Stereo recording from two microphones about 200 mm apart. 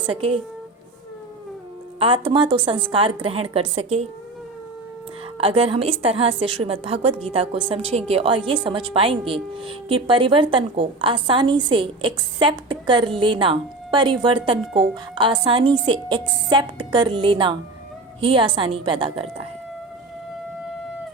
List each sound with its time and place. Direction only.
0.0 s speech: 25° right (ahead or behind)
2.0 s speech: 25° right (ahead or behind)
5.4 s speech: 25° right (ahead or behind)